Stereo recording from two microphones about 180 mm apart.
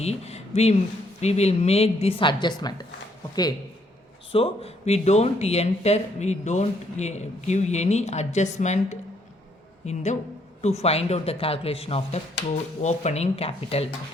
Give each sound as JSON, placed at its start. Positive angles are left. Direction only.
{"t": 0.0, "sound": "speech", "side_deg": 35}
{"t": 4.3, "sound": "speech", "side_deg": 30}